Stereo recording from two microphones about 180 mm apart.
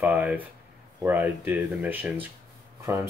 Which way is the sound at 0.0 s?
10° right (ahead or behind).